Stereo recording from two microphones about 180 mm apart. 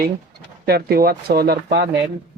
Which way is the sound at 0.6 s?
60° right (ahead or behind).